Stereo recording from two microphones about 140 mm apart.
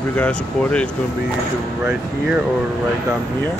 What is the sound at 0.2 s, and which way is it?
Speech, 10° left (ahead or behind).